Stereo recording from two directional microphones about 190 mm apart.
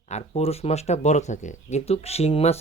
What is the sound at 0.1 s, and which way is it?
Speech, 35° left (ahead or behind).